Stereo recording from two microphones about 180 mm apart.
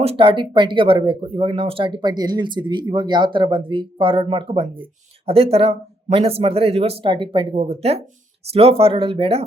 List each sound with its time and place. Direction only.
0.0 s speech: 30° right (ahead or behind)